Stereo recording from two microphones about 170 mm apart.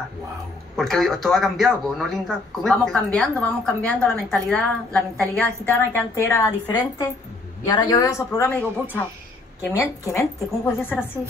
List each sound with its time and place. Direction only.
0.7 s speech: centre (ahead or behind)
9.8 s speech: 15° left (ahead or behind)